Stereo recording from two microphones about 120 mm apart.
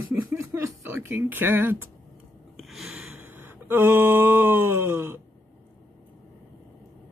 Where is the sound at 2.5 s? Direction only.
Centre (ahead or behind); by 5.1 s 20° right (ahead or behind).